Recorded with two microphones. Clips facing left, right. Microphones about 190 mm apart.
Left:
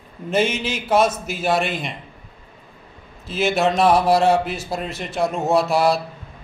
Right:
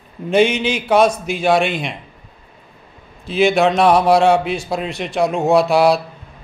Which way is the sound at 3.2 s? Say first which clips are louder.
Right 5 dB; 5° left (ahead or behind).